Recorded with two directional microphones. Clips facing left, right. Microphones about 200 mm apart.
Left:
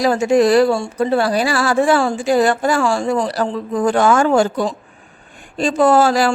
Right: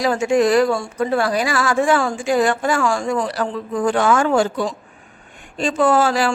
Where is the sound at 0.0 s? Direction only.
40° left (ahead or behind).